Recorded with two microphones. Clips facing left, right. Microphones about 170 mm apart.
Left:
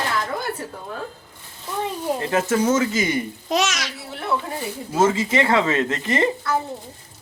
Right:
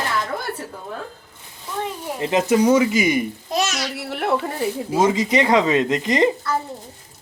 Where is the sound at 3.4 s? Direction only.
90° left.